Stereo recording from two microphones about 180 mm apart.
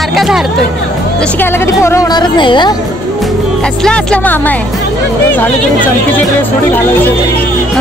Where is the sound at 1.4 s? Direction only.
15° left (ahead or behind).